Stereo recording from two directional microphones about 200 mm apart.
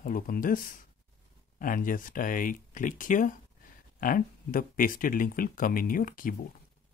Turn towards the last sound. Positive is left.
turn(degrees=45)  # may be behind; listen again after turning